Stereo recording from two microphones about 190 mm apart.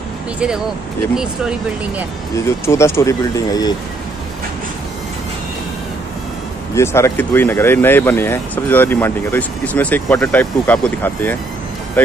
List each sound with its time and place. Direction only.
1.1 s speech: 5° right (ahead or behind)
2.3 s speech: 15° left (ahead or behind)
6.7 s speech: 15° left (ahead or behind)